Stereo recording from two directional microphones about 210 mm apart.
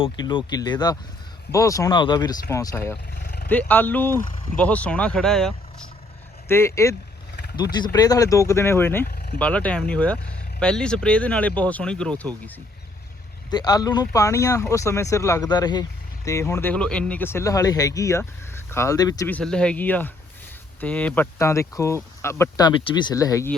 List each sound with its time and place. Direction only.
0.0 s speech: 20° left (ahead or behind)
3.2 s vehicle: 45° left (ahead or behind)
3.5 s speech: 10° left (ahead or behind)
9.0 s vehicle: 45° left (ahead or behind)
9.4 s speech: 5° left (ahead or behind)
13.5 s speech: 20° left (ahead or behind)